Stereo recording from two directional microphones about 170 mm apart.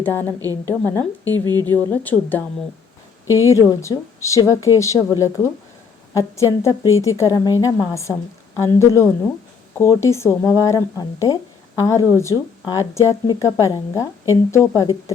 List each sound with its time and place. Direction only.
0.0 s a woman's voice: 10° left (ahead or behind)
0.3 s speech: 20° right (ahead or behind)
0.7 s a woman's voice: 15° left (ahead or behind)
1.2 s speech: 20° right (ahead or behind)
1.7 s a woman's voice: 10° left (ahead or behind)